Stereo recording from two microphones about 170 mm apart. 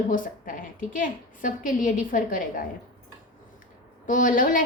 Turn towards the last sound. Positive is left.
turn(degrees=55)  # may be behind; listen again after turning